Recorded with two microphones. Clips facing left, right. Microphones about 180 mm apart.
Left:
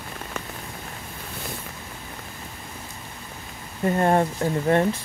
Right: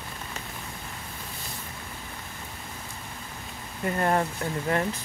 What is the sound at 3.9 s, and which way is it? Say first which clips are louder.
Speech: left 5 dB; 30° left (ahead or behind).